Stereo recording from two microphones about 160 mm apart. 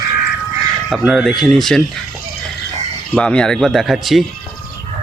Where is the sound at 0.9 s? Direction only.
Centre (ahead or behind).